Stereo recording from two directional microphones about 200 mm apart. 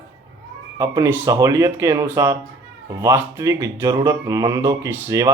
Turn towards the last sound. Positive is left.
turn(degrees=-15)  # may be behind; listen again after turning